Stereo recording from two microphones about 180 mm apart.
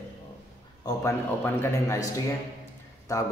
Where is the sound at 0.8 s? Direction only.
15° left (ahead or behind).